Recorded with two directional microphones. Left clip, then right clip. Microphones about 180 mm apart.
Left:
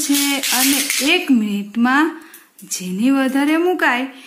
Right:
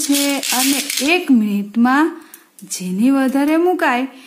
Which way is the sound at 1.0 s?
30° right (ahead or behind).